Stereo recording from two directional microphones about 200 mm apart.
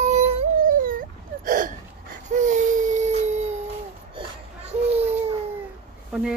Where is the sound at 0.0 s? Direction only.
35° right (ahead or behind).